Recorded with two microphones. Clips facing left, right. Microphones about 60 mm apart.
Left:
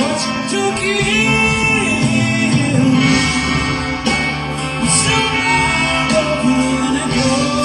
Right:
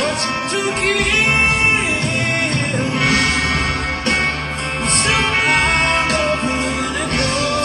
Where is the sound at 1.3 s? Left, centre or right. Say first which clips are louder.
Left 1 dB; right.